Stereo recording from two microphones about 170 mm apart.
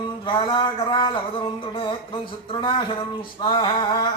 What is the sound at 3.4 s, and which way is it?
Speech, 30° left (ahead or behind).